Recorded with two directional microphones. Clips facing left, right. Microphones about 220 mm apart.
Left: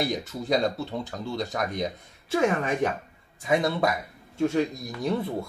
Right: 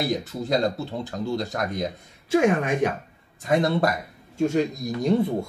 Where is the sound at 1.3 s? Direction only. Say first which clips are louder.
Right 1 dB; centre (ahead or behind).